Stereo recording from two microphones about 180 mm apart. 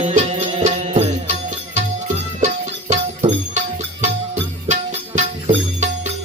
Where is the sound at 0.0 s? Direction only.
35° right (ahead or behind).